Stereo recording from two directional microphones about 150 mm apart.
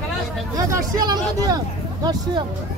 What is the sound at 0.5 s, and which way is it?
Speech, 25° right (ahead or behind).